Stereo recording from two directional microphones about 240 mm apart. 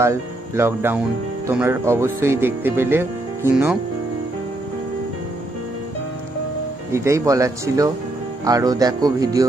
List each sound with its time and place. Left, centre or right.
0.0 s speech: centre
6.9 s speech: centre